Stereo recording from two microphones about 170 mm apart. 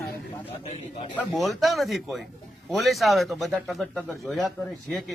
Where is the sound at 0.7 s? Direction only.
40° left (ahead or behind).